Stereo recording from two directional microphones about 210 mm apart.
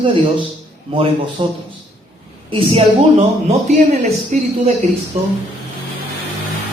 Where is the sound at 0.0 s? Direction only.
25° right (ahead or behind).